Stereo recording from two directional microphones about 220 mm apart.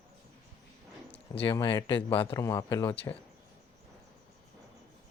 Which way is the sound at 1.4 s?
20° left (ahead or behind).